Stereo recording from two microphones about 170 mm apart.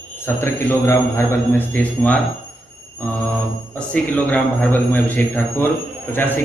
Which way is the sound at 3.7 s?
5° left (ahead or behind).